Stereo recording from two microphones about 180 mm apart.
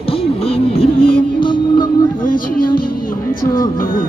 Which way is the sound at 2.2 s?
50° left (ahead or behind).